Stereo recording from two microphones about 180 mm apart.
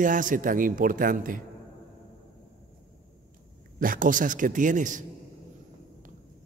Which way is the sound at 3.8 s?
50° right (ahead or behind).